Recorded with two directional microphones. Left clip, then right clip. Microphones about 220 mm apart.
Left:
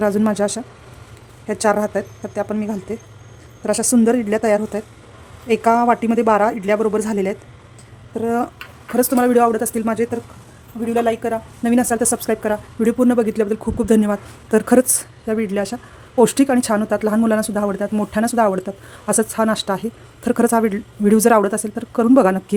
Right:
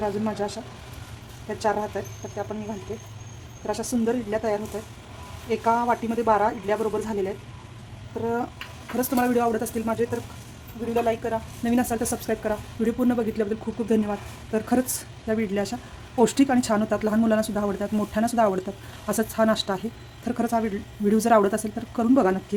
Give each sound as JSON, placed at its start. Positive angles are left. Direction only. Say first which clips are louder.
{"t": 0.0, "sound": "a woman's voice", "louder": "left 9 dB", "side_deg": 45}
{"t": 3.7, "sound": "a woman's voice", "louder": "left 9 dB", "side_deg": 50}
{"t": 8.5, "sound": "speech", "louder": "left 9 dB", "side_deg": 35}
{"t": 10.9, "sound": "speech", "louder": "left 6 dB", "side_deg": 45}
{"t": 15.3, "sound": "a woman's voice", "louder": "left 5 dB", "side_deg": 20}
{"t": 20.2, "sound": "a woman's voice", "louder": "left 9 dB", "side_deg": 30}